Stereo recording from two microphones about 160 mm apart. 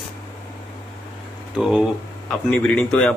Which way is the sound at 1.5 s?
5° right (ahead or behind).